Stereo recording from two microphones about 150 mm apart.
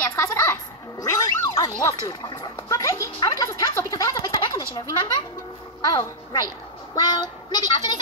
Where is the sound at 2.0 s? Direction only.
25° left (ahead or behind).